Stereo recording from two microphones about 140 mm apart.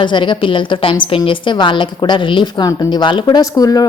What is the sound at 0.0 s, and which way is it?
A woman's voice, 35° left (ahead or behind).